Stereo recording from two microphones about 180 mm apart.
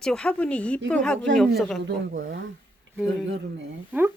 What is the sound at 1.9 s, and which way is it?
Speech, 80° right.